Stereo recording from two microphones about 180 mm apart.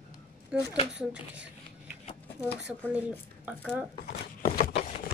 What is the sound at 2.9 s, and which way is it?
Speech, 5° right (ahead or behind).